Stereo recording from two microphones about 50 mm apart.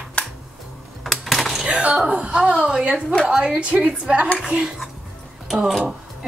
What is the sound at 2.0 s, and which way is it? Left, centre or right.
A woman's voice, right.